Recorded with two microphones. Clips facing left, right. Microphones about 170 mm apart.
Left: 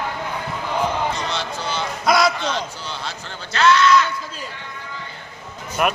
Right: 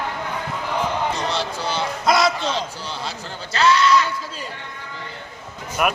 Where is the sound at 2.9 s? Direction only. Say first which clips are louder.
Right 1 dB; 35° right (ahead or behind).